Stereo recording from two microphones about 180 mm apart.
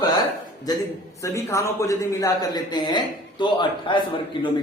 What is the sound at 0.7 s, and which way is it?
A man's voice, 20° left (ahead or behind).